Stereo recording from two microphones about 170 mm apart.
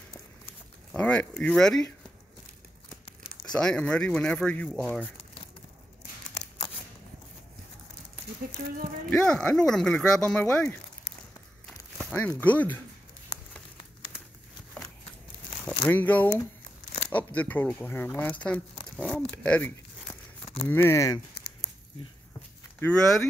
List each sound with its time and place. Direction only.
0.9 s speech: 5° left (ahead or behind)
3.5 s speech: 5° left (ahead or behind)
9.1 s speech: 5° left (ahead or behind)
12.0 s speech: 10° left (ahead or behind)
15.6 s speech: 10° left (ahead or behind)
19.3 s a sound: 10° left (ahead or behind)
20.6 s speech: 15° left (ahead or behind)
21.4 s squish: 70° left (ahead or behind)
22.8 s speech: 5° left (ahead or behind)